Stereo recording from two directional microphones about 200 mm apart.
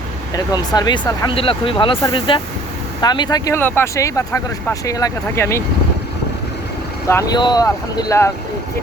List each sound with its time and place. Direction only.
0.3 s speech: 20° left (ahead or behind)
7.1 s speech: 20° left (ahead or behind)